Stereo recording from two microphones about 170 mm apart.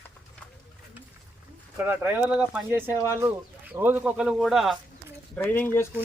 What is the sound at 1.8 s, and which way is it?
Speech, 10° right (ahead or behind).